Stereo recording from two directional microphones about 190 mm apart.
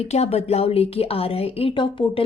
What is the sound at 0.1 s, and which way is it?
A woman's voice, 35° left (ahead or behind).